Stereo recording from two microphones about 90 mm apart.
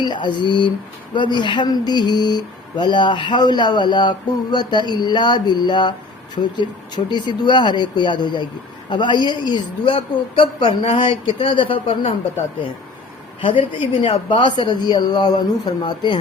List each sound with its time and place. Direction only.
0.0 s a woman's voice: 60° left (ahead or behind); by 12.1 s 80° left
13.4 s speech: 75° left (ahead or behind); by 16.1 s 55° left (ahead or behind)